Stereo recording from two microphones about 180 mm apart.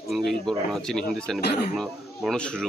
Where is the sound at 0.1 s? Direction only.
Centre (ahead or behind).